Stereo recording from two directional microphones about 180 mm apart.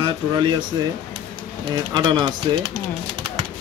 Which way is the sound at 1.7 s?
25° right (ahead or behind).